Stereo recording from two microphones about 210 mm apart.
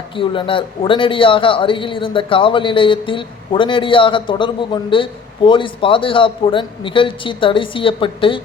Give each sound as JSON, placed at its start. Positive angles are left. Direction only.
{"t": 0.2, "sound": "speech", "side_deg": 25}